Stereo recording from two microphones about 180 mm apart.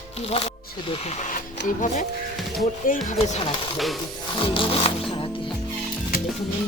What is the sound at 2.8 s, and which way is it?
Speech, 45° left (ahead or behind).